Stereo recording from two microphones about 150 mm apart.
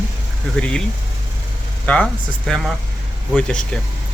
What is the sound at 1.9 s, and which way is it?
Speech, 10° left (ahead or behind).